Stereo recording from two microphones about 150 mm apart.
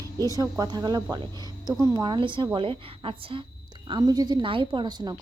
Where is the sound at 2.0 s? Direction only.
35° right (ahead or behind).